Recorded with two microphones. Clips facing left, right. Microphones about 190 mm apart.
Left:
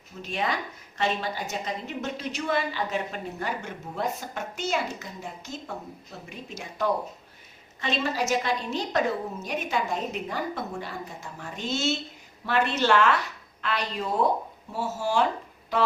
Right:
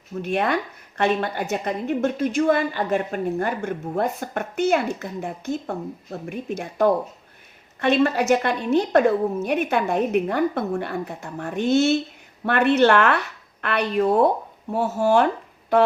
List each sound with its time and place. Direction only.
0.2 s a woman's voice: 60° right (ahead or behind)